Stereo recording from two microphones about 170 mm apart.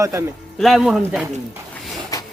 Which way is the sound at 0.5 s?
Centre (ahead or behind).